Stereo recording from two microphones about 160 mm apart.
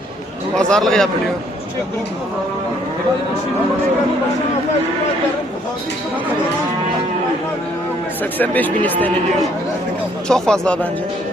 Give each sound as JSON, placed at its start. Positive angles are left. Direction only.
{"t": 0.5, "sound": "a man's voice", "side_deg": 5}
{"t": 8.2, "sound": "speech", "side_deg": 10}
{"t": 10.2, "sound": "a man's voice", "side_deg": 5}